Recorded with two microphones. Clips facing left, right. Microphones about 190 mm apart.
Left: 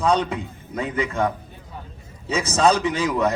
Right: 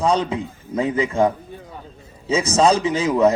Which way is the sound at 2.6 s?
25° right (ahead or behind).